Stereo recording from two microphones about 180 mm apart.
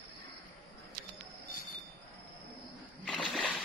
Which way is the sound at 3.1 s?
5° left (ahead or behind).